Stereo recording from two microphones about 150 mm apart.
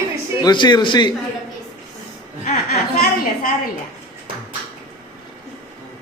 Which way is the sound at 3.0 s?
65° left (ahead or behind).